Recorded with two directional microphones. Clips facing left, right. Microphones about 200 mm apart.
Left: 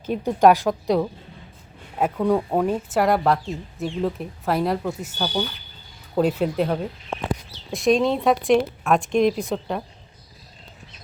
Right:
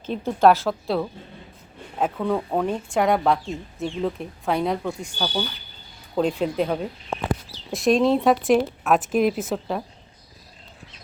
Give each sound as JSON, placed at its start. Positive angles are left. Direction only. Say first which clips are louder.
{"t": 0.0, "sound": "a woman's voice", "louder": "left 1 dB", "side_deg": 10}
{"t": 2.1, "sound": "speech", "louder": "left 5 dB", "side_deg": 10}